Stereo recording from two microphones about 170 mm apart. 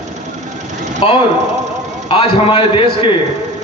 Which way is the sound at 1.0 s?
30° left (ahead or behind).